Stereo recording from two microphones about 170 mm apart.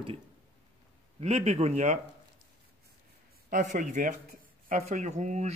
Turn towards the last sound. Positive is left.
turn(degrees=-45)  # may be behind; listen again after turning